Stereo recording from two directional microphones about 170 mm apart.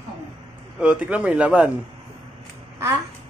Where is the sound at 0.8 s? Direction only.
5° right (ahead or behind).